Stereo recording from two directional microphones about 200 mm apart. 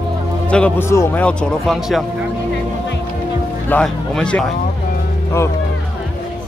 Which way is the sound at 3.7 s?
5° left (ahead or behind).